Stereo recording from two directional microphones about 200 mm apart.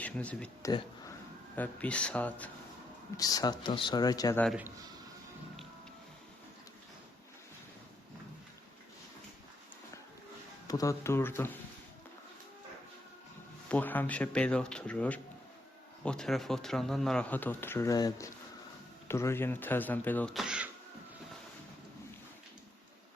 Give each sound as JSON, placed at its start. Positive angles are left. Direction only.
{"t": 0.0, "sound": "speech", "side_deg": 5}
{"t": 3.2, "sound": "speech", "side_deg": 20}
{"t": 4.4, "sound": "speech", "side_deg": -5}
{"t": 10.7, "sound": "speech", "side_deg": 15}
{"t": 13.7, "sound": "speech", "side_deg": 10}